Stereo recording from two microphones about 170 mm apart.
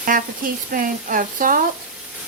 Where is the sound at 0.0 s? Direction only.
55° right (ahead or behind).